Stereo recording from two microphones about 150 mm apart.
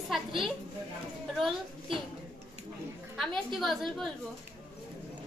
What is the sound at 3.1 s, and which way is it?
Child singing, centre (ahead or behind).